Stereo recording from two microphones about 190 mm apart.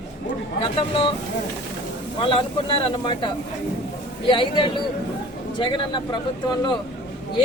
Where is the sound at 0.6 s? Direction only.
30° left (ahead or behind).